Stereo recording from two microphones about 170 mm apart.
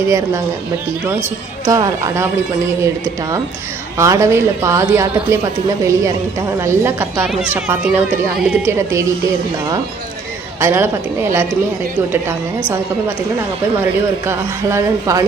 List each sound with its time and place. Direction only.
1.6 s speech: 20° right (ahead or behind)
3.9 s speech: 20° right (ahead or behind)
10.6 s speech: 15° right (ahead or behind)
14.3 s speech: 15° right (ahead or behind)